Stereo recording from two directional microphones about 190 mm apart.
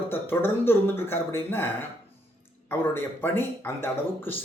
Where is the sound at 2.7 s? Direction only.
10° left (ahead or behind).